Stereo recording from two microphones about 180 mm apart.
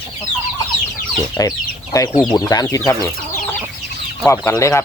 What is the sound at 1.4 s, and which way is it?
Speech, 20° left (ahead or behind).